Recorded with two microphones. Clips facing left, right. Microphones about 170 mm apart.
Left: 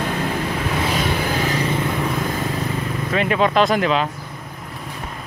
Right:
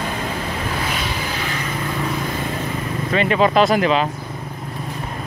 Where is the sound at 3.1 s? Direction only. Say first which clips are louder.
Right 2 dB; centre (ahead or behind).